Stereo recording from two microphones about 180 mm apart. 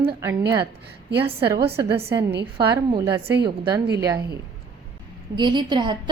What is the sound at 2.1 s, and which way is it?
Speech, 70° right (ahead or behind).